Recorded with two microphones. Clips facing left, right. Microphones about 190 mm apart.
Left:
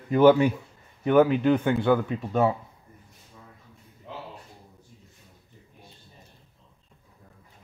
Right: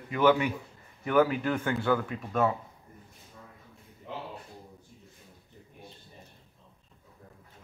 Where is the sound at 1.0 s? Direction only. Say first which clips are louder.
Left 6 dB; 25° left (ahead or behind).